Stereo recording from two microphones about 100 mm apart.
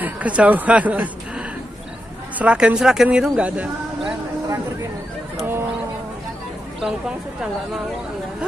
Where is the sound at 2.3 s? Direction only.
10° right (ahead or behind).